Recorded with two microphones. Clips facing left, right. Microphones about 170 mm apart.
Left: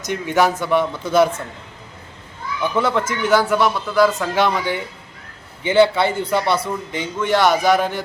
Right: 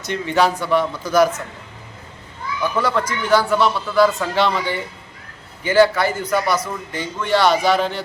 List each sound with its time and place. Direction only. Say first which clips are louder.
0.0 s speech: even; 15° left (ahead or behind)
2.7 s a man's voice: left 2 dB; 25° left (ahead or behind)